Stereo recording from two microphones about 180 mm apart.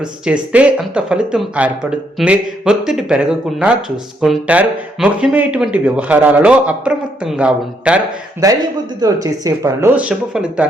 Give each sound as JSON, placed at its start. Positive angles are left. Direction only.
{"t": 0.0, "sound": "speech", "side_deg": -5}
{"t": 8.4, "sound": "a man's voice", "side_deg": -20}